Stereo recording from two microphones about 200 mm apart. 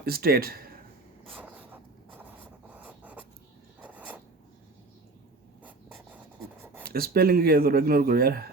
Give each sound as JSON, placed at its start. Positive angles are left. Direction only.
{"t": 0.0, "sound": "speech", "side_deg": -50}
{"t": 1.4, "sound": "a sound", "side_deg": -5}
{"t": 2.6, "sound": "writing", "side_deg": -10}
{"t": 6.8, "sound": "speech", "side_deg": -50}